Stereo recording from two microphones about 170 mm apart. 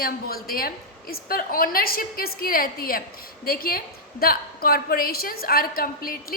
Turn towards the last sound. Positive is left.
turn(degrees=60)  # may be behind; listen again after turning